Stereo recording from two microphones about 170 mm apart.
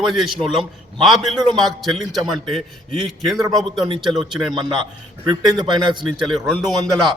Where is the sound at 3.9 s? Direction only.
25° right (ahead or behind).